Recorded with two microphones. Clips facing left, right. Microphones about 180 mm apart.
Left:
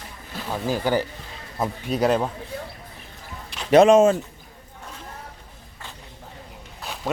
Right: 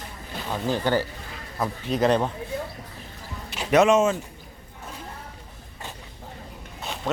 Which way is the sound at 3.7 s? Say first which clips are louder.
Left 5 dB; 35° left (ahead or behind).